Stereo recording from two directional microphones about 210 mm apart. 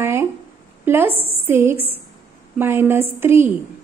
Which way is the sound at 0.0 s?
10° right (ahead or behind).